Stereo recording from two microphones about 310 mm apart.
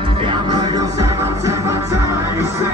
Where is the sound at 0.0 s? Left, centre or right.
Centre.